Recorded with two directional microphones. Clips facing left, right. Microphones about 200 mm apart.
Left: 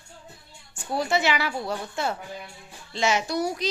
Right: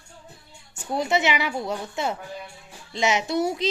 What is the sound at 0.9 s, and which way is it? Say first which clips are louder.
A woman's voice: right 1 dB; 20° right (ahead or behind).